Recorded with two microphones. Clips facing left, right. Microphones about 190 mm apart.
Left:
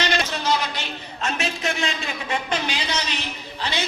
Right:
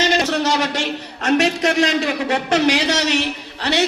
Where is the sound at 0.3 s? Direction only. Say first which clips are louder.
Right 5 dB; 75° right (ahead or behind).